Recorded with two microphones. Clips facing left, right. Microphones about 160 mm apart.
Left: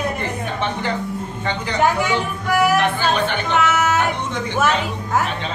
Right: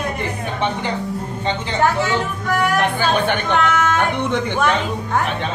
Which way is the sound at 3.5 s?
5° left (ahead or behind).